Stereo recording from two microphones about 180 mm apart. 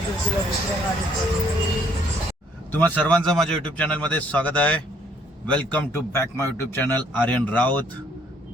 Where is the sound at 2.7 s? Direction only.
10° left (ahead or behind).